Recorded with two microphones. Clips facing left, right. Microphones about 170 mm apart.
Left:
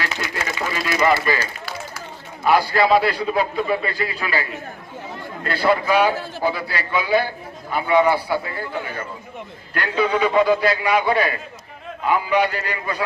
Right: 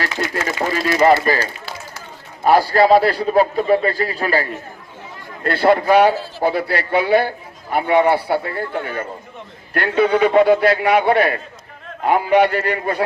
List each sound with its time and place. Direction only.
0.0 s a man's voice: 45° right (ahead or behind)
5.4 s a man's voice: 55° right (ahead or behind)